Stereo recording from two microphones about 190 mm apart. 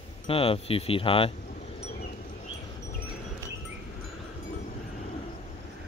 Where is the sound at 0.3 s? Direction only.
30° left (ahead or behind).